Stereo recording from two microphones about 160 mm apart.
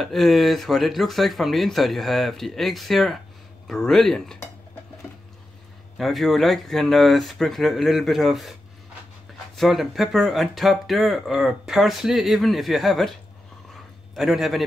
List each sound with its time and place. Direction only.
0.0 s speech: centre (ahead or behind)
5.9 s speech: centre (ahead or behind)
9.6 s speech: centre (ahead or behind)
14.1 s speech: centre (ahead or behind)